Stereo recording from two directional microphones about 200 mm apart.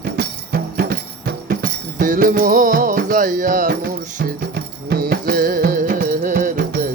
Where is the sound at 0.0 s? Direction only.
50° right (ahead or behind).